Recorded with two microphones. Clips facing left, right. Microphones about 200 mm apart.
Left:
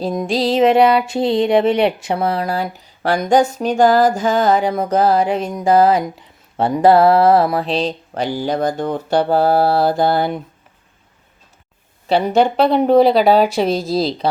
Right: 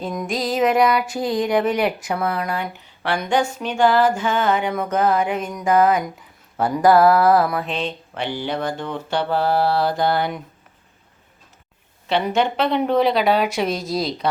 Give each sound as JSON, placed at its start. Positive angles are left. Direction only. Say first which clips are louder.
{"t": 0.0, "sound": "music", "louder": "left 6 dB", "side_deg": 30}
{"t": 12.0, "sound": "music", "louder": "left 5 dB", "side_deg": 35}